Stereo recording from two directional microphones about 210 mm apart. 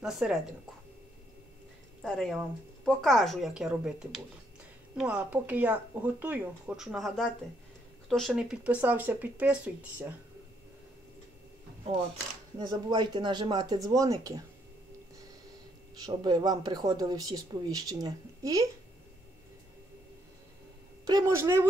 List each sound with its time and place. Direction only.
0.0 s speech: 5° right (ahead or behind)
2.0 s speech: centre (ahead or behind)
12.5 s speech: 20° right (ahead or behind)
16.1 s speech: 20° right (ahead or behind)
21.0 s speech: 15° right (ahead or behind)